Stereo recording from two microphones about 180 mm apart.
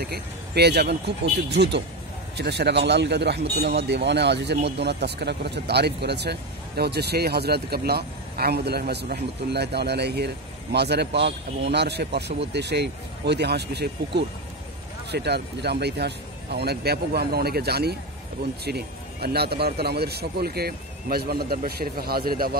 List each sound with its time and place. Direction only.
0.0 s speech: 65° right (ahead or behind)